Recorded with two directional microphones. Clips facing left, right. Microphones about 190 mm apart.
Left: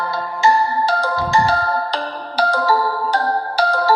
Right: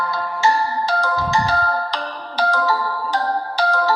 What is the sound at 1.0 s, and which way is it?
Music, 30° left (ahead or behind).